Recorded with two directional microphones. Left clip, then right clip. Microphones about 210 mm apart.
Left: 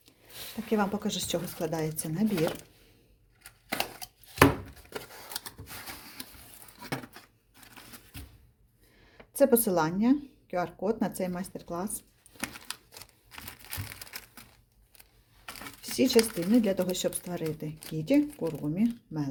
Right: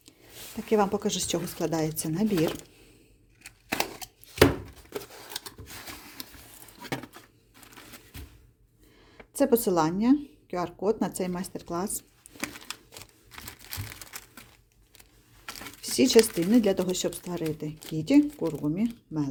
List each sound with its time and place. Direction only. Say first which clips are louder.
0.7 s speech: right 5 dB; 25° right (ahead or behind)
6.8 s a sound: right 2 dB; 15° right (ahead or behind)
9.1 s speech: left 1 dB; 15° right (ahead or behind)
12.4 s crumpling: right 2 dB; 15° right (ahead or behind)
15.4 s a sound: right 2 dB; 15° right (ahead or behind)
15.8 s speech: right 4 dB; 30° right (ahead or behind)